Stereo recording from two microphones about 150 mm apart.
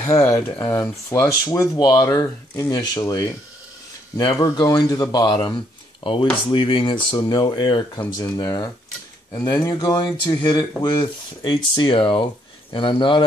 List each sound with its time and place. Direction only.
0.0 s speech: 20° left (ahead or behind)
4.3 s speech: 20° left (ahead or behind)